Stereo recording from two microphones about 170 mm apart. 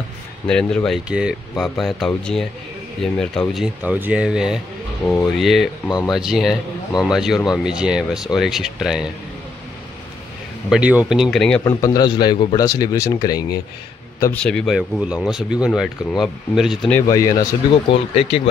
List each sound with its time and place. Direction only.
0.5 s speech: 5° left (ahead or behind)
5.0 s speech: 10° left (ahead or behind)
5.9 s a man's voice: 25° left (ahead or behind)
6.1 s speech: centre (ahead or behind)
10.7 s speech: 5° right (ahead or behind)
11.6 s a man's voice: 20° left (ahead or behind)
14.3 s speech: 5° left (ahead or behind)
16.9 s a man's voice: 20° left (ahead or behind)
17.8 s speech: 35° left (ahead or behind)